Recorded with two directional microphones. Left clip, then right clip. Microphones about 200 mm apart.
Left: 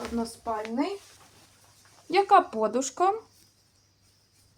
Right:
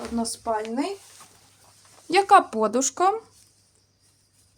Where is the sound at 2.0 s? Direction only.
45° right (ahead or behind).